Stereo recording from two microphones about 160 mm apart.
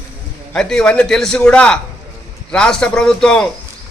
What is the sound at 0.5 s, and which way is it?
A man's voice, 5° left (ahead or behind).